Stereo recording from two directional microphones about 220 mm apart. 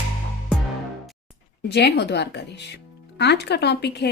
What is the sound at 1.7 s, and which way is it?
Speech, 50° left (ahead or behind).